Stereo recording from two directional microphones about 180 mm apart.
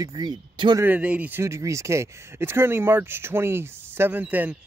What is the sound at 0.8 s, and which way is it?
Speech, 5° right (ahead or behind).